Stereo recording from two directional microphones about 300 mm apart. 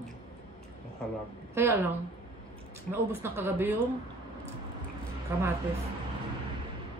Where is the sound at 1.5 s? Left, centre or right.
Centre.